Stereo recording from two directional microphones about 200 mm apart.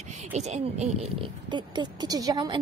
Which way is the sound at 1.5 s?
20° right (ahead or behind).